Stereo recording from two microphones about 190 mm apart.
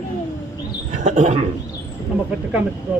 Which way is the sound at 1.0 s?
35° right (ahead or behind).